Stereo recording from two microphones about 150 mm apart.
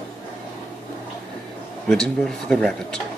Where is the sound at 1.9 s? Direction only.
5° left (ahead or behind).